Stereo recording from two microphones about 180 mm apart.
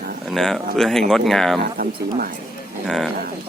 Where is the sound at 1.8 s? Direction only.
55° right (ahead or behind).